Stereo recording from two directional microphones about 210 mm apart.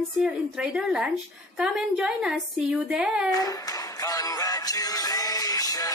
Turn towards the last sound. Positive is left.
turn(degrees=15)  # may be behind; listen again after turning